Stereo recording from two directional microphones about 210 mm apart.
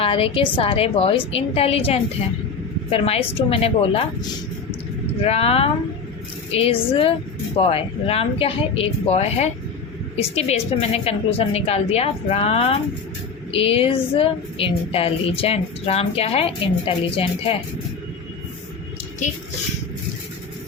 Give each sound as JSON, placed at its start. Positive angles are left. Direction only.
{"t": 0.0, "sound": "speech", "side_deg": 25}
{"t": 5.2, "sound": "speech", "side_deg": 30}